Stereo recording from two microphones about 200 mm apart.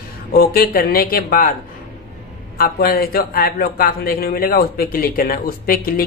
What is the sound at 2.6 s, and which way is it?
A man's voice, 50° left (ahead or behind).